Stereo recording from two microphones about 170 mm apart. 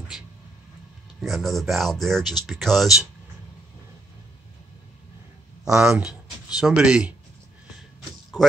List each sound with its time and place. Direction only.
1.2 s speech: centre (ahead or behind)
5.7 s speech: 5° right (ahead or behind)
8.3 s music: centre (ahead or behind)